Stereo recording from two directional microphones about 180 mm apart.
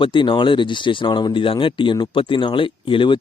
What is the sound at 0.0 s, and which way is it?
Speech, 25° left (ahead or behind).